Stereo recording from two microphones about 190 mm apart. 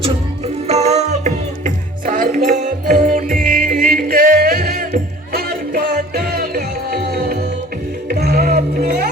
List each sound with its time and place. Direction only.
0.0 s music: 35° right (ahead or behind); by 8.6 s 55° right (ahead or behind)